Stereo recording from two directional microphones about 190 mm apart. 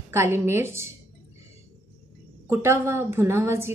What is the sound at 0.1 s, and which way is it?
Speech, 15° right (ahead or behind).